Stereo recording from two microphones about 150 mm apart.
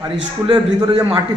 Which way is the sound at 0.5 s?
25° right (ahead or behind).